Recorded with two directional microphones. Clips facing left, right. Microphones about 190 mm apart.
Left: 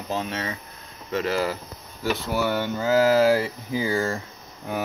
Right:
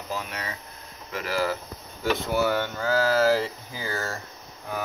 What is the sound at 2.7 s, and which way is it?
Speech, 15° left (ahead or behind).